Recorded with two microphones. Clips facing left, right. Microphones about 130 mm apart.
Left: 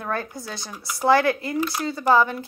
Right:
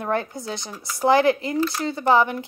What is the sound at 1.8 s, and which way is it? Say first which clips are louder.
Speech: even; 20° right (ahead or behind).